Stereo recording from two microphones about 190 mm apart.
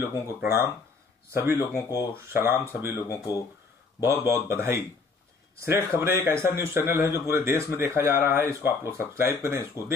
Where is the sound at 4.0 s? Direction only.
15° right (ahead or behind).